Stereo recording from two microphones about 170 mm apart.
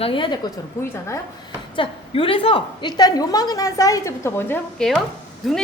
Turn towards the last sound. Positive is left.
turn(degrees=0)  # may be behind; listen again after turning